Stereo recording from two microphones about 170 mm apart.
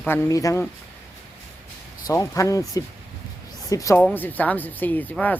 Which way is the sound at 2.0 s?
20° left (ahead or behind).